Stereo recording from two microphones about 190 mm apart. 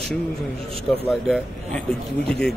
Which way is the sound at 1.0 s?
Centre (ahead or behind).